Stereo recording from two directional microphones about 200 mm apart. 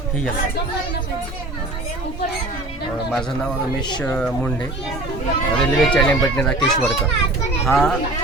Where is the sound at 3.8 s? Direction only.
20° left (ahead or behind).